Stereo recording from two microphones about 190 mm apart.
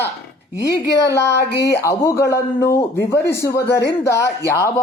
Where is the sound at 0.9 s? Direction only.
15° left (ahead or behind).